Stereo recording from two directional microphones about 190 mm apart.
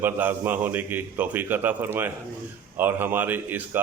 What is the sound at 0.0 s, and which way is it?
A man's voice, 10° right (ahead or behind).